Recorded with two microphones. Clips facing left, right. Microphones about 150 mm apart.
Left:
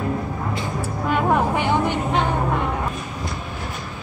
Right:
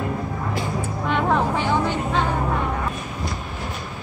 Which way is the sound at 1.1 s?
15° left (ahead or behind).